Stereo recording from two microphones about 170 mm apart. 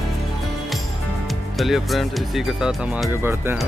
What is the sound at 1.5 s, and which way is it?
Speech, centre (ahead or behind).